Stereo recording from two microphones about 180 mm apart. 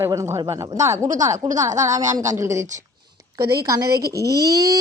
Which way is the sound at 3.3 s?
20° right (ahead or behind).